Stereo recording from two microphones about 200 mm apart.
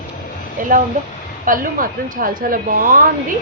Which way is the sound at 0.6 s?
40° right (ahead or behind).